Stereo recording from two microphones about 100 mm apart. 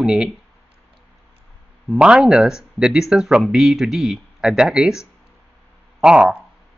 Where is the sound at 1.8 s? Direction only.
10° right (ahead or behind).